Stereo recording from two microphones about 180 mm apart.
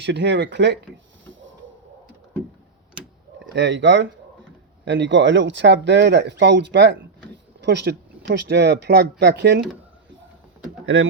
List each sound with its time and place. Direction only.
0.0 s speech: 80° right
1.2 s a sound: 90° right
3.5 s speech: 75° right (ahead or behind)
10.8 s speech: 90° right